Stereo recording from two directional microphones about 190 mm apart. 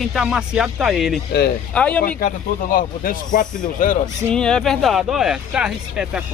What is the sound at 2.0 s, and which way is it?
Speech, 45° left (ahead or behind).